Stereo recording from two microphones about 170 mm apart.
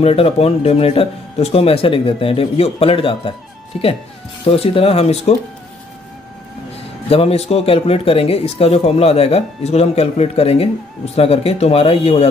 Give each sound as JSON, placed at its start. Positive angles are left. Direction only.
{"t": 0.0, "sound": "speech", "side_deg": 35}
{"t": 4.5, "sound": "speech", "side_deg": 35}
{"t": 7.1, "sound": "speech", "side_deg": 35}